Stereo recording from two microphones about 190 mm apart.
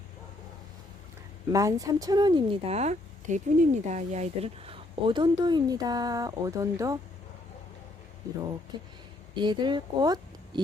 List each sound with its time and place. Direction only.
1.5 s speech: 20° right (ahead or behind)
9.3 s a woman's voice: 25° right (ahead or behind)